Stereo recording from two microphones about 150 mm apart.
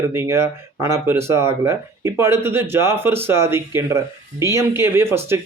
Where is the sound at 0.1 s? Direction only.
15° right (ahead or behind).